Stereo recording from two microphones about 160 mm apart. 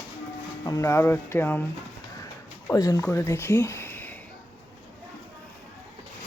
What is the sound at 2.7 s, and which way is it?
Speech, 20° left (ahead or behind).